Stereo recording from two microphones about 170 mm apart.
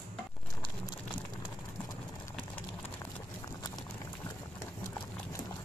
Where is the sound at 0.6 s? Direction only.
25° left (ahead or behind).